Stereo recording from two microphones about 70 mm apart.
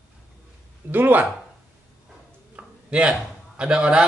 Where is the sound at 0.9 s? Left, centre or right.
Right.